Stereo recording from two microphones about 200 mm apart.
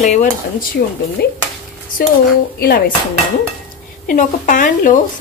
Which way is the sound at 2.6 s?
50° left (ahead or behind).